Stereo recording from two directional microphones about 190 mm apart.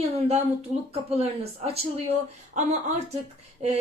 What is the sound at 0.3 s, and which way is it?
Speech, 30° right (ahead or behind).